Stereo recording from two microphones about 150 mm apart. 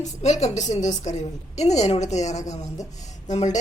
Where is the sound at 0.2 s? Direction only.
50° left (ahead or behind).